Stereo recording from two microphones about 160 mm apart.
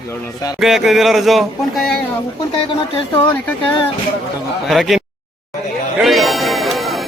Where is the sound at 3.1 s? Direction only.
10° left (ahead or behind).